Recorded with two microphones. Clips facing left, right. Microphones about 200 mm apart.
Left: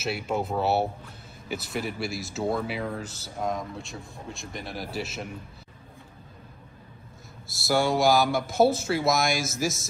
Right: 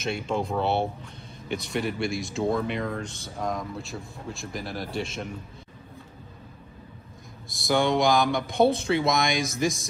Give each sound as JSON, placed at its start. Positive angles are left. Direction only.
{"t": 0.0, "sound": "speech", "side_deg": 5}
{"t": 7.5, "sound": "speech", "side_deg": 5}